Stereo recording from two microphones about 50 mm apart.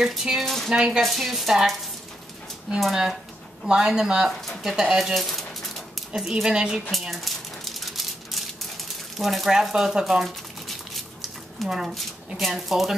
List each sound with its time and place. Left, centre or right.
0.0 s speech: centre
0.5 s speech: centre
0.7 s speech: centre
1.0 s speech: centre
3.6 s speech: centre
5.1 s dog: centre
6.3 s speech: centre
6.9 s rattle: centre
9.2 s speech: centre
11.6 s speech: centre